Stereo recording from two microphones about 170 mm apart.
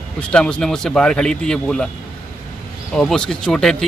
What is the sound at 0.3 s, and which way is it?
Speech, 5° left (ahead or behind).